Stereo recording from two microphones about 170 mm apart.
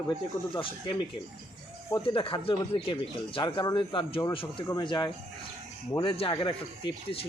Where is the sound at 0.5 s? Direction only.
30° left (ahead or behind).